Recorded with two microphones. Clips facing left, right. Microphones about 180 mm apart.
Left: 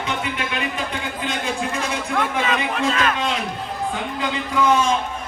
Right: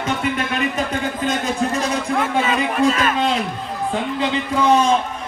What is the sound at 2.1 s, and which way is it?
A man's voice, 5° right (ahead or behind).